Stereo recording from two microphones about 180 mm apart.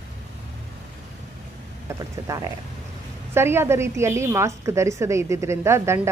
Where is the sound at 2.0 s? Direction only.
20° right (ahead or behind).